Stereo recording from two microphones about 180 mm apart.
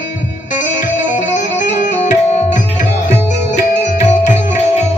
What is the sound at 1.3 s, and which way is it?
Music, 45° left (ahead or behind).